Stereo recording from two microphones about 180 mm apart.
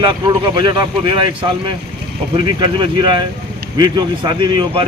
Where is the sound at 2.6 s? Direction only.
25° right (ahead or behind).